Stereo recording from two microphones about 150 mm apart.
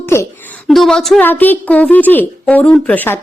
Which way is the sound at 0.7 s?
5° left (ahead or behind).